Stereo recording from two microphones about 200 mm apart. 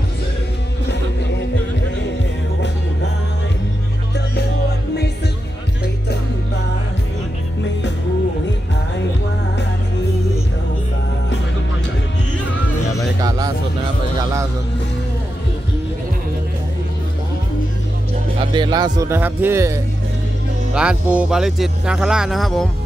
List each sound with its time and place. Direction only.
13.2 s a sound: 15° right (ahead or behind)
18.5 s music: 20° right (ahead or behind)
20.7 s speech: 5° right (ahead or behind)